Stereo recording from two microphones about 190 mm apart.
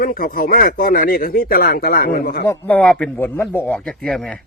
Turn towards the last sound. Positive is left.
turn(degrees=5)  # may be behind; listen again after turning